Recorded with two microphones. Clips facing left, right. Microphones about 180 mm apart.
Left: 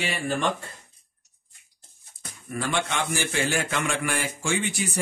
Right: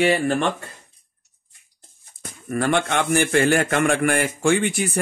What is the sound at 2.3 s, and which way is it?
A man's voice, 55° right (ahead or behind).